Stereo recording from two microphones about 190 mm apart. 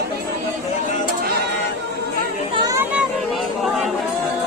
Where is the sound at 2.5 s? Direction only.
15° right (ahead or behind).